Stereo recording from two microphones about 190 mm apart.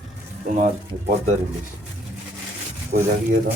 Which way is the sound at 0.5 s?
40° right (ahead or behind).